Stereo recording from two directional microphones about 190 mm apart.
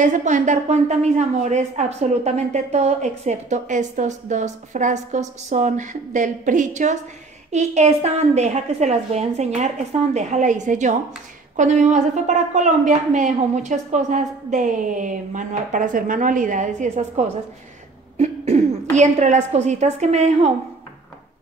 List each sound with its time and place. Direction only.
0.0 s a woman's voice: 40° right (ahead or behind)
18.1 s cough: 35° right (ahead or behind)
18.9 s a woman's voice: 35° right (ahead or behind)